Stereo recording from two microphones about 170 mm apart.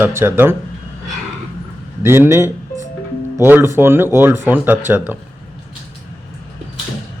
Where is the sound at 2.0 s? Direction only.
15° right (ahead or behind).